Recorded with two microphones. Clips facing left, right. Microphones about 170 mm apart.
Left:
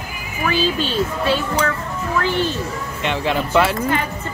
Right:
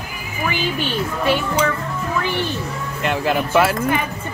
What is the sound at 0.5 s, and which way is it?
Speech, 15° right (ahead or behind).